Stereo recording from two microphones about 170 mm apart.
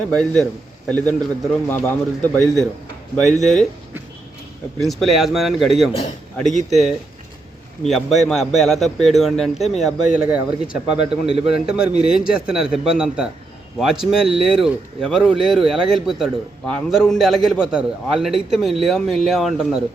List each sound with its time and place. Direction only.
0.1 s a man's voice: centre (ahead or behind)
3.2 s speech: centre (ahead or behind)
4.8 s speech: centre (ahead or behind)
11.0 s speech: 35° right (ahead or behind)
11.6 s speech: 5° right (ahead or behind)